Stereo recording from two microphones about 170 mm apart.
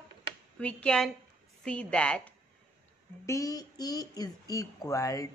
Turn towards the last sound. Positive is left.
turn(degrees=20)  # may be behind; listen again after turning